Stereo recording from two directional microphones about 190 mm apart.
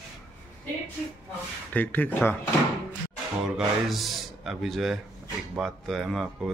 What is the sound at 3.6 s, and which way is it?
Speech, centre (ahead or behind).